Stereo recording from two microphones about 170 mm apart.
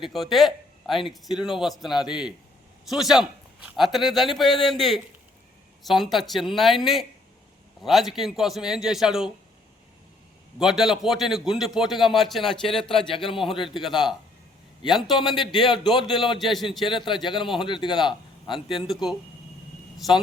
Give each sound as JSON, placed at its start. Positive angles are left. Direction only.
{"t": 0.0, "sound": "speech", "side_deg": 0}
{"t": 10.6, "sound": "speech", "side_deg": 0}
{"t": 12.9, "sound": "a man's voice", "side_deg": 30}
{"t": 14.8, "sound": "a man's voice", "side_deg": 25}
{"t": 16.4, "sound": "speech", "side_deg": 0}
{"t": 16.8, "sound": "speech", "side_deg": 30}